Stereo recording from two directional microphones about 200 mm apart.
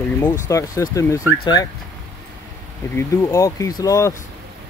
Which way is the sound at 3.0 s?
15° left (ahead or behind).